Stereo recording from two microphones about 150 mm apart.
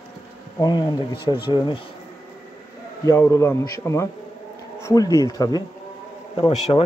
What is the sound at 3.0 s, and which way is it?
Speech, 20° left (ahead or behind).